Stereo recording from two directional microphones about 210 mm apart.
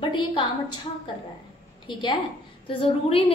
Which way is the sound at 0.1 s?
20° left (ahead or behind).